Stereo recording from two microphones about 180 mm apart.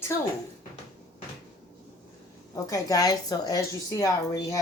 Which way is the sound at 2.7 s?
20° left (ahead or behind).